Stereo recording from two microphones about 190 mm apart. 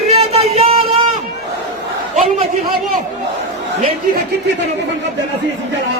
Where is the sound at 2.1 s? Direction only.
40° right (ahead or behind).